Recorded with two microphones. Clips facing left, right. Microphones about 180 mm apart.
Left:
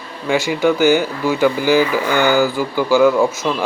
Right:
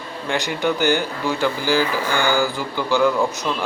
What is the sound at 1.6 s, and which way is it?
Speech, 20° left (ahead or behind).